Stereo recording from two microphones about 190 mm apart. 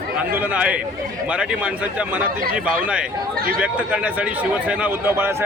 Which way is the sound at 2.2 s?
50° right (ahead or behind).